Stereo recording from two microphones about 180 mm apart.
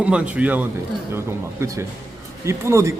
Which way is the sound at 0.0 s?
5° right (ahead or behind).